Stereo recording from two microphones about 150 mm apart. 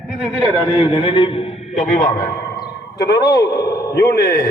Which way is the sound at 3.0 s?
90° left.